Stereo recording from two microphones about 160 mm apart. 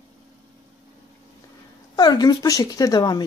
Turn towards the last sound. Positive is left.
turn(degrees=25)  # may be behind; listen again after turning